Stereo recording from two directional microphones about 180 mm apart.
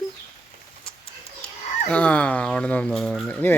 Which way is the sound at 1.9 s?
5° left (ahead or behind).